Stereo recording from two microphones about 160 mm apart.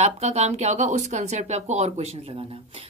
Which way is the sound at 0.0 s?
45° right (ahead or behind).